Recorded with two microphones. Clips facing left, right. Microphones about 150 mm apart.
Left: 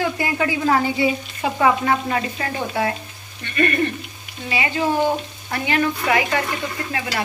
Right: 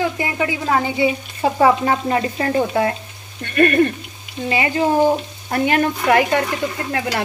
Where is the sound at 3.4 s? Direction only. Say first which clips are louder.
Right 6 dB; 55° right (ahead or behind).